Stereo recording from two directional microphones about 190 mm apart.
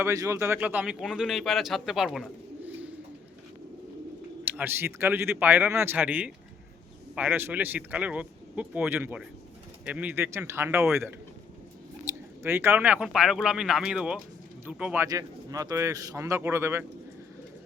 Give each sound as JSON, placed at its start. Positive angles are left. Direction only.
{"t": 0.0, "sound": "a man's voice", "side_deg": -15}
{"t": 4.4, "sound": "a man's voice", "side_deg": -10}
{"t": 15.1, "sound": "a man's voice", "side_deg": -20}